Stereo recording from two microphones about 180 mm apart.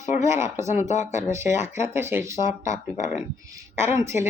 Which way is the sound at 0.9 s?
40° left (ahead or behind).